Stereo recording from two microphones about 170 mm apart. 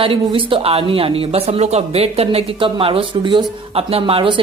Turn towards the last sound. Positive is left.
turn(degrees=-30)  # may be behind; listen again after turning